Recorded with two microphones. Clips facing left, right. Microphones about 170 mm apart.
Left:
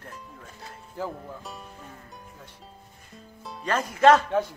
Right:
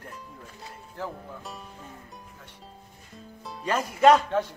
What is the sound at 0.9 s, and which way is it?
Speech, 5° left (ahead or behind).